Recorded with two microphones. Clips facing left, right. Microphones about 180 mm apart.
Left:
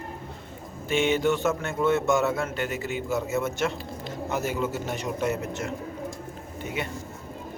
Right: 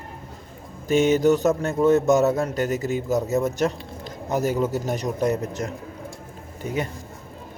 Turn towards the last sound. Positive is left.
turn(degrees=-40)  # may be behind; listen again after turning